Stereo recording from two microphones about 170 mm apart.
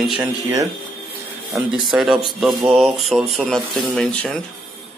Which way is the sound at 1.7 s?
Centre (ahead or behind).